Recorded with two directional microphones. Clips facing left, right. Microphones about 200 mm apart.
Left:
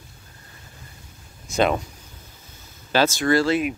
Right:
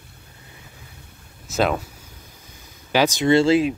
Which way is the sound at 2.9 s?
15° right (ahead or behind).